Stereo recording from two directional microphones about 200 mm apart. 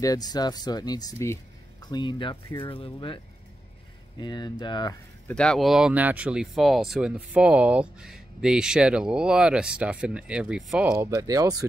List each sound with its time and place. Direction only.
0.0 s speech: 20° left (ahead or behind)
4.2 s speech: 20° left (ahead or behind)
5.3 s speech: 5° left (ahead or behind)
10.9 s speech: 15° right (ahead or behind)